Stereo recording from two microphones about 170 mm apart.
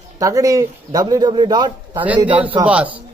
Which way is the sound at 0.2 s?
20° right (ahead or behind).